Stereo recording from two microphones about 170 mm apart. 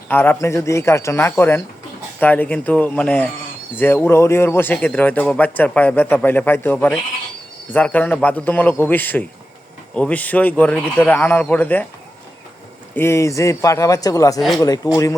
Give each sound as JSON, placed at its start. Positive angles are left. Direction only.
{"t": 0.1, "sound": "a man's voice", "side_deg": 10}
{"t": 12.9, "sound": "a man's voice", "side_deg": 15}